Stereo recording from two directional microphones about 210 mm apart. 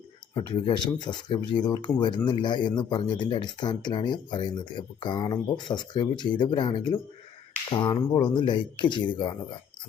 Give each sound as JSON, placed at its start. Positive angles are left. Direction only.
{"t": 0.3, "sound": "speech", "side_deg": 25}